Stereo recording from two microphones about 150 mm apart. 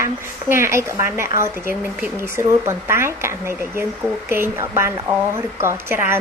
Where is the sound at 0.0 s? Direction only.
20° right (ahead or behind).